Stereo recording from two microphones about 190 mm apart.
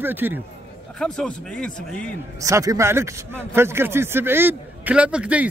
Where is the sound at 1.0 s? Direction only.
5° left (ahead or behind).